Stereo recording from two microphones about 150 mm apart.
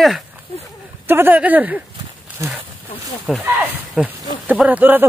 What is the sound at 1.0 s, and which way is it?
Speech, 15° right (ahead or behind).